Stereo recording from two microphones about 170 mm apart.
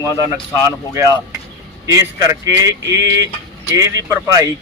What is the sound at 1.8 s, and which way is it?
Speech, 20° right (ahead or behind).